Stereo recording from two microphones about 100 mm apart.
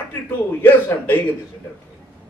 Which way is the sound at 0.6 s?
20° left (ahead or behind).